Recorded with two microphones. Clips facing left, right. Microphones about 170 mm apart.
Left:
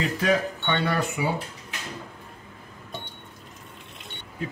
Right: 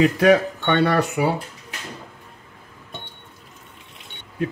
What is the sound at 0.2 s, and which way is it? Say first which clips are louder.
Speech: right 8 dB; 70° right (ahead or behind).